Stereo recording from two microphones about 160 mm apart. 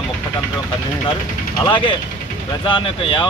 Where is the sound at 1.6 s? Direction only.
30° left (ahead or behind).